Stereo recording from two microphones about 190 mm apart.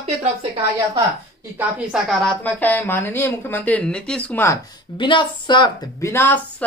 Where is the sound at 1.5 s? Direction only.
5° right (ahead or behind).